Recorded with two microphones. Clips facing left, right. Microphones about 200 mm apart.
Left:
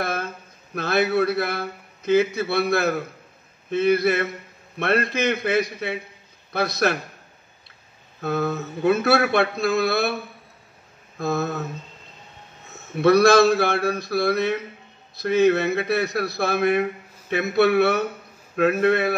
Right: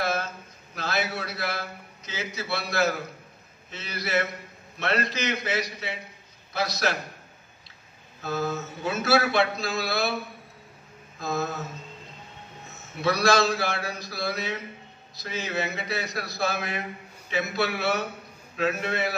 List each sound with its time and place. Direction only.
0.0 s a sound: 55° left (ahead or behind)
0.7 s a man's voice: 60° left (ahead or behind)
8.2 s a man's voice: 60° left (ahead or behind)
11.1 s a man's voice: 60° left (ahead or behind)
12.9 s a man's voice: 60° left (ahead or behind)